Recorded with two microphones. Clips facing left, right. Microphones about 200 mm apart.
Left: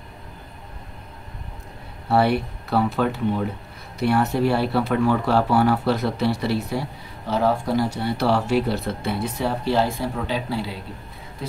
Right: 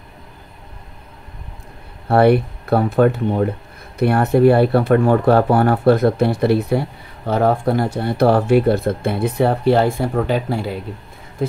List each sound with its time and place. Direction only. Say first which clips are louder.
2.0 s speech: right 7 dB; 55° right (ahead or behind)